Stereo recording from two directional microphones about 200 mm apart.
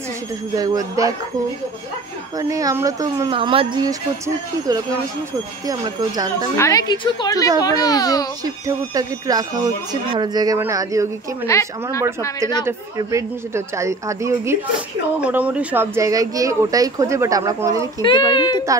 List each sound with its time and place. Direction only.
0.6 s speech: 20° right (ahead or behind)
2.5 s speech: 15° right (ahead or behind)
5.7 s speech: 20° right (ahead or behind)
6.5 s a woman's voice: 15° left (ahead or behind)
8.6 s speech: 20° right (ahead or behind)
11.4 s a woman's voice: 15° left (ahead or behind)
12.6 s speech: 15° right (ahead or behind)
18.0 s a child's voice: 25° left (ahead or behind)